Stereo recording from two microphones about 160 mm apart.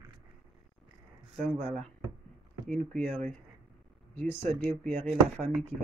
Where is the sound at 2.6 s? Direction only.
10° left (ahead or behind).